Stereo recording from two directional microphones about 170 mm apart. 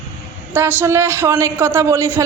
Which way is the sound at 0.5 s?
10° right (ahead or behind).